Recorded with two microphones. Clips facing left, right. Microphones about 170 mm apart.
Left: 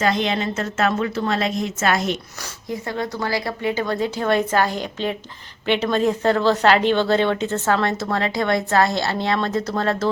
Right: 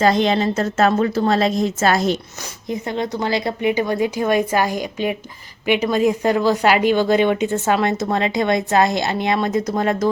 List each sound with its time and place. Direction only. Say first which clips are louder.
0.0 s a woman's voice: right 5 dB; 35° right (ahead or behind)
2.4 s speech: right 3 dB; 20° right (ahead or behind)